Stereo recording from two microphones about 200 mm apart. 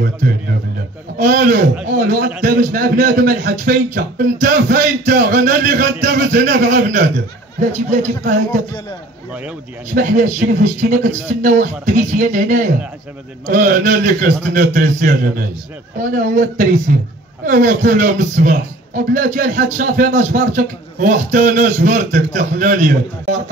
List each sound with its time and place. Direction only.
1.1 s a man's voice: 45° right (ahead or behind)
9.9 s a man's voice: 45° right (ahead or behind)